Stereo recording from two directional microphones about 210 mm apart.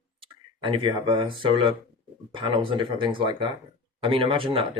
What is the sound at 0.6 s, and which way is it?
Speech, 25° right (ahead or behind).